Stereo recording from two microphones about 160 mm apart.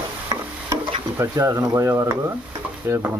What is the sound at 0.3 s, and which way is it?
Stir, 30° right (ahead or behind).